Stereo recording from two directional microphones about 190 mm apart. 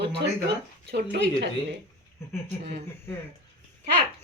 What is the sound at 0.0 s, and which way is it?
Speech, 65° right (ahead or behind).